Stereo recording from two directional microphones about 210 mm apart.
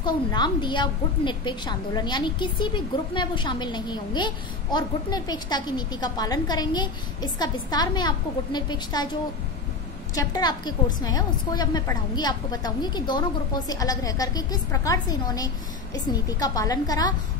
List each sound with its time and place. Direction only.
0.0 s a woman's voice: 20° left (ahead or behind)
10.1 s a woman's voice: 20° left (ahead or behind)